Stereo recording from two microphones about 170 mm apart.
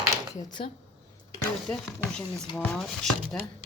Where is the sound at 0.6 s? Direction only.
30° left (ahead or behind).